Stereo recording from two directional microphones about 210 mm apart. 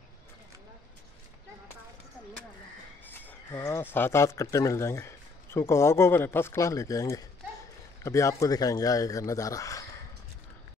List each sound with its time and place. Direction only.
3.1 s speech: 10° left (ahead or behind)